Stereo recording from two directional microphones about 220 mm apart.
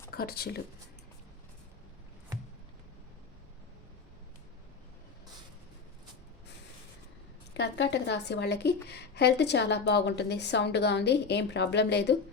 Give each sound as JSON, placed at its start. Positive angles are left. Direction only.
{"t": 0.1, "sound": "speech", "side_deg": 45}
{"t": 7.5, "sound": "a woman's voice", "side_deg": 50}